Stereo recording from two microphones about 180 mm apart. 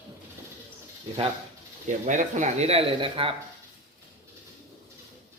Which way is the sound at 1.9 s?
45° right (ahead or behind).